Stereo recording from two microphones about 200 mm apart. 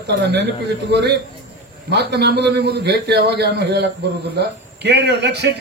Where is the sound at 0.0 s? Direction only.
55° right (ahead or behind).